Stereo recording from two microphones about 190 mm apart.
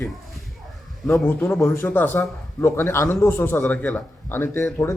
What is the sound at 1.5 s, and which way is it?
Speech, 15° left (ahead or behind).